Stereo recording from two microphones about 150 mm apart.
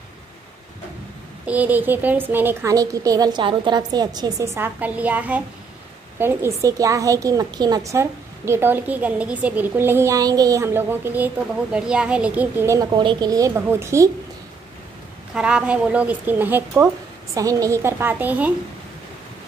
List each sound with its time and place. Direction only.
1.4 s a woman's voice: 10° right (ahead or behind); by 4.5 s 25° right (ahead or behind)
4.6 s a woman's voice: 10° right (ahead or behind)
12.9 s a woman's voice: 30° right (ahead or behind)
15.3 s a woman's voice: 5° right (ahead or behind)